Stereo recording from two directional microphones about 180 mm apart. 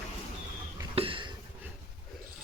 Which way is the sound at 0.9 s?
30° right (ahead or behind).